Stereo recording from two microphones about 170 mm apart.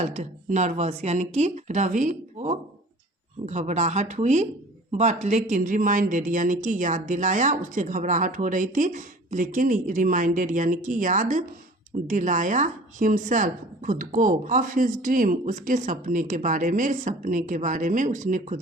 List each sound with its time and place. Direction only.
0.0 s a woman's voice: 45° right (ahead or behind)